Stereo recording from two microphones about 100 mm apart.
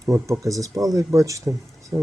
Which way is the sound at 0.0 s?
30° right (ahead or behind).